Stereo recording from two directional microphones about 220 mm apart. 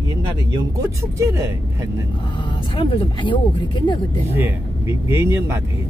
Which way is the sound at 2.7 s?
25° left (ahead or behind).